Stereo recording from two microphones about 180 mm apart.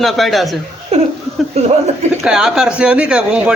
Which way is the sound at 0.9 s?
35° right (ahead or behind).